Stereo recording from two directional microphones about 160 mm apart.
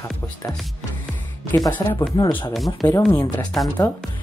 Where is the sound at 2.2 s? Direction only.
25° left (ahead or behind).